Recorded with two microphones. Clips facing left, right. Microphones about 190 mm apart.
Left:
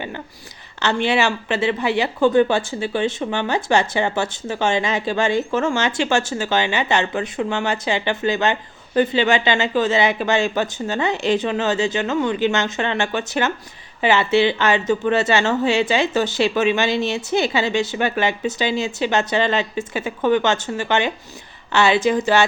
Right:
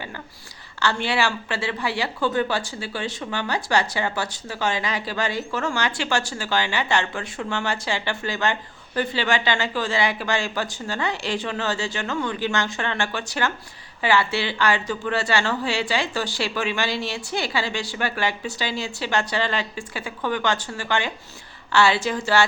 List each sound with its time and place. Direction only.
0.8 s a woman's voice: 20° left (ahead or behind)